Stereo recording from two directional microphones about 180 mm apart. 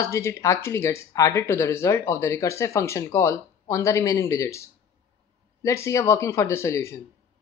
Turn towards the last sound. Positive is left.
turn(degrees=15)  # may be behind; listen again after turning